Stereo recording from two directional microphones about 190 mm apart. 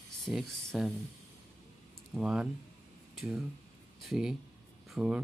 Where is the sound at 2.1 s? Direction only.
5° right (ahead or behind).